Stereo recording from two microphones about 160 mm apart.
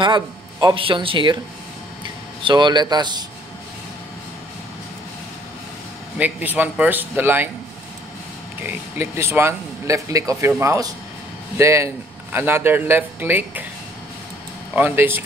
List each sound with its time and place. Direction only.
0.0 s speech: 30° right (ahead or behind)
2.4 s speech: 30° right (ahead or behind)
6.1 s a man's voice: 10° right (ahead or behind)
8.6 s a man's voice: 15° right (ahead or behind)
14.8 s a man's voice: 10° right (ahead or behind)